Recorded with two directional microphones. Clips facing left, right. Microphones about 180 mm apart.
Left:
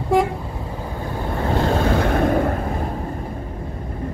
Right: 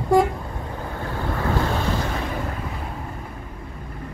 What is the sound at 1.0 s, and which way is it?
Boat, 20° left (ahead or behind).